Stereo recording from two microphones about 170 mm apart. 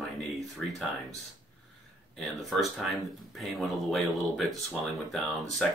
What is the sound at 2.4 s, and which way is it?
Speech, centre (ahead or behind).